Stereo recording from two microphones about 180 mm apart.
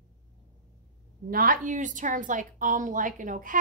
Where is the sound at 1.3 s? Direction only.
50° right (ahead or behind).